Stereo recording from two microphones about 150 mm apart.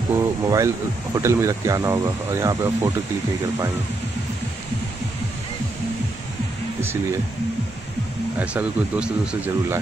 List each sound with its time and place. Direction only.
0.1 s speech: 20° right (ahead or behind)
8.4 s speech: 10° right (ahead or behind)